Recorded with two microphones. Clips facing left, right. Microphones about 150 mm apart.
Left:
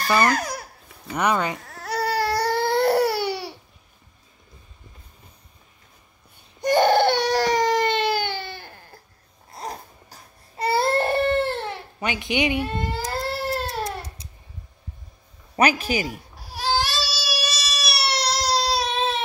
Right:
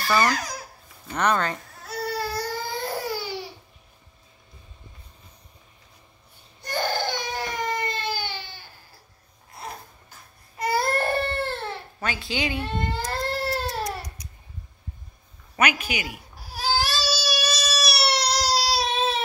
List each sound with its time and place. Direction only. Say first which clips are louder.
0.3 s babbling: left 4 dB; 60° left (ahead or behind)
1.1 s speech: left 1 dB; 10° left (ahead or behind)
1.7 s baby cry: left 5 dB; 70° left (ahead or behind)
6.7 s baby cry: left 10 dB; 65° left (ahead or behind)
9.5 s baby cry: left 4 dB; 35° left (ahead or behind); by 12.6 s 20° left (ahead or behind)
13.2 s cat: right 1 dB; centre (ahead or behind)
13.8 s baby cry: left 1 dB; 25° left (ahead or behind)
15.5 s speech: left 4 dB; 35° left (ahead or behind)
16.1 s baby cry: left 3 dB; centre (ahead or behind)